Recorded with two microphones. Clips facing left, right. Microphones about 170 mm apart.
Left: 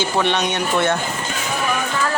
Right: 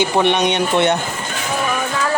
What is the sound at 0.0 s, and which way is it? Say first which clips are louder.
Speech: right 4 dB; 15° right (ahead or behind).